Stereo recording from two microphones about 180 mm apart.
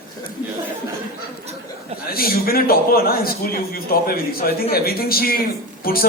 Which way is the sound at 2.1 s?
55° left (ahead or behind).